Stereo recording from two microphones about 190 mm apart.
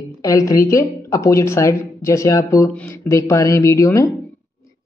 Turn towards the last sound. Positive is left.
turn(degrees=15)  # may be behind; listen again after turning